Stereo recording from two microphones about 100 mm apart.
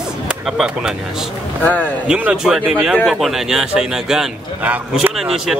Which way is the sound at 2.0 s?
10° right (ahead or behind).